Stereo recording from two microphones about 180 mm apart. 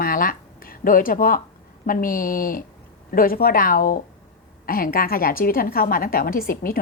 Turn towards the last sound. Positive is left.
turn(degrees=55)  # may be behind; listen again after turning